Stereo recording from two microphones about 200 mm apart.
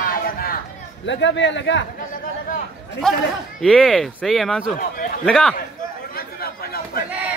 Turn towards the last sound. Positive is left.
turn(degrees=0)  # may be behind; listen again after turning